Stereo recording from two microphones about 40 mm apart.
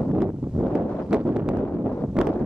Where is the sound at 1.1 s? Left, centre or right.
Right.